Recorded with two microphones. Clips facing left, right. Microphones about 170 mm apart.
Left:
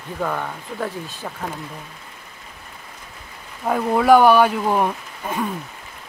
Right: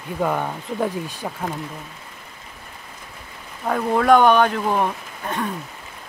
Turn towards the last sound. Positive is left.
turn(degrees=10)  # may be behind; listen again after turning